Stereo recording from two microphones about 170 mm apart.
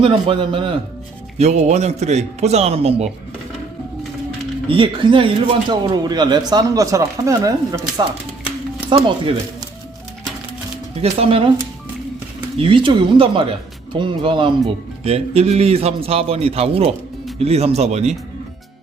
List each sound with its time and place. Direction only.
0.0 s a man's voice: 30° right (ahead or behind)
4.7 s speech: 30° right (ahead or behind)
11.0 s a man's voice: 35° right (ahead or behind)
12.5 s a man's voice: 30° right (ahead or behind)